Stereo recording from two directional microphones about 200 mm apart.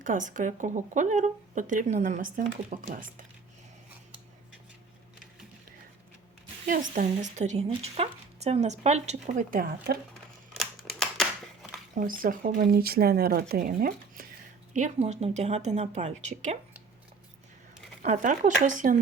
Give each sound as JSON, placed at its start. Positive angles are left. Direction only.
{"t": 0.0, "sound": "speech", "side_deg": -40}
{"t": 6.7, "sound": "speech", "side_deg": -40}
{"t": 10.6, "sound": "scissors", "side_deg": 0}
{"t": 11.9, "sound": "speech", "side_deg": -45}
{"t": 18.0, "sound": "speech", "side_deg": -40}